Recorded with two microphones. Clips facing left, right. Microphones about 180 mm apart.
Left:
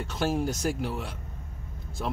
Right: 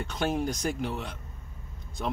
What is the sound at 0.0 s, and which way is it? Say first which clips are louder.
Speech: left 1 dB; 5° left (ahead or behind).